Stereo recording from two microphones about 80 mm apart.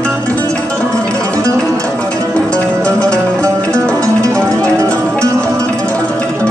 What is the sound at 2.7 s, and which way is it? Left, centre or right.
Music, right.